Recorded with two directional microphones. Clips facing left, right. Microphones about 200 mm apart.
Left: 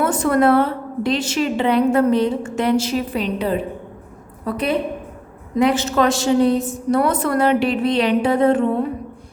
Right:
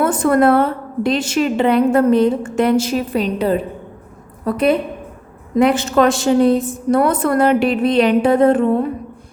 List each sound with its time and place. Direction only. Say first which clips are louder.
0.0 s a woman's voice: right 3 dB; 50° right (ahead or behind)